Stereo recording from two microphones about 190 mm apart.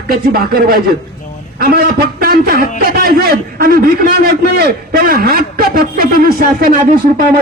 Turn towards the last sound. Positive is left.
turn(degrees=-45)  # may be behind; listen again after turning